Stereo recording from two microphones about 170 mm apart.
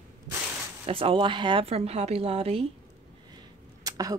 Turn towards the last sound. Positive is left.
turn(degrees=-20)  # may be behind; listen again after turning